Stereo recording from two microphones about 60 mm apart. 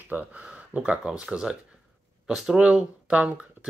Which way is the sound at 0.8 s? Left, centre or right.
Centre.